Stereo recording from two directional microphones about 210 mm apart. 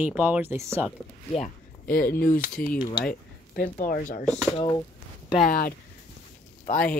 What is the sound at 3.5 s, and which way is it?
Speech, 45° left (ahead or behind).